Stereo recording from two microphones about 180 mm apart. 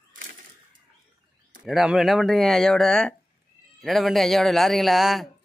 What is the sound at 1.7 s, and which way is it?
Speech, centre (ahead or behind).